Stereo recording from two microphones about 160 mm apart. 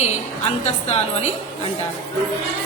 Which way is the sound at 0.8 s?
45° left (ahead or behind).